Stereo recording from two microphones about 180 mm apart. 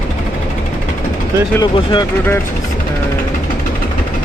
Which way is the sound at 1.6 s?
25° left (ahead or behind).